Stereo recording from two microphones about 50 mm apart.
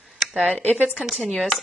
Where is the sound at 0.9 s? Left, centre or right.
Centre.